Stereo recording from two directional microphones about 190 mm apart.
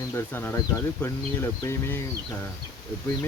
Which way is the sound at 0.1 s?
10° left (ahead or behind).